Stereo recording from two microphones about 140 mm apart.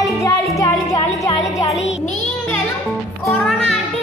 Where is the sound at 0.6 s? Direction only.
25° left (ahead or behind).